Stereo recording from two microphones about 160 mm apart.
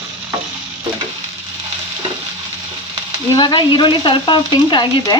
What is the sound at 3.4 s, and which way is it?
Speech, 30° left (ahead or behind).